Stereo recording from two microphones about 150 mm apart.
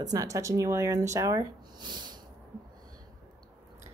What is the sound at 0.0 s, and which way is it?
Speech, 25° right (ahead or behind).